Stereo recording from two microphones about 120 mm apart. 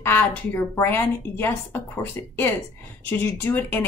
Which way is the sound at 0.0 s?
15° left (ahead or behind).